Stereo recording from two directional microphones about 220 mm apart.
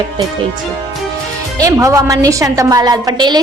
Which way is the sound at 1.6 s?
15° right (ahead or behind).